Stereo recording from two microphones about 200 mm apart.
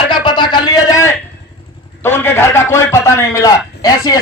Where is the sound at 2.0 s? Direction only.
10° left (ahead or behind).